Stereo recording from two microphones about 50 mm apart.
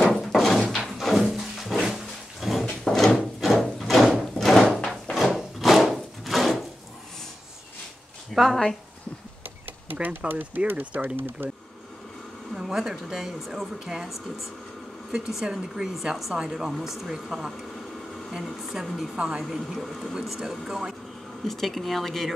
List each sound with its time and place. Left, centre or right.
0.0 s a sound: centre
2.8 s drawer open or close: centre
4.4 s door: centre
5.1 s wood: centre
8.3 s a sound: centre
10.0 s speech: right
11.1 s speech: right
12.5 s speech: centre
19.1 s a woman's voice: centre
19.5 s speech: centre
20.2 s speech: centre
21.5 s speech: centre